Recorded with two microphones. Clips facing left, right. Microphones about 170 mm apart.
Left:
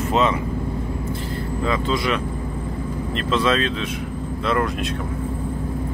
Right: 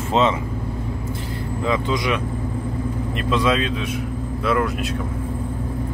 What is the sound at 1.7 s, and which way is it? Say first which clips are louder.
Speech: right 1 dB; 15° right (ahead or behind).